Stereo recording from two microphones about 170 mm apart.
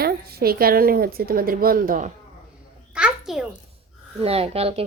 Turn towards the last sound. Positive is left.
turn(degrees=-35)  # may be behind; listen again after turning